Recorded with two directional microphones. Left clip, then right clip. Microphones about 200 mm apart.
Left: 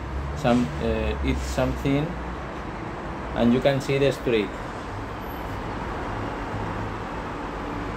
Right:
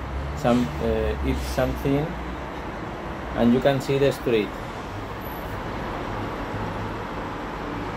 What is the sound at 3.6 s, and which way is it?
Speech, 5° right (ahead or behind).